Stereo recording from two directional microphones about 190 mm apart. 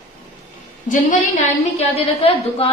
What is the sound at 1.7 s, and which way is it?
Speech, 30° left (ahead or behind).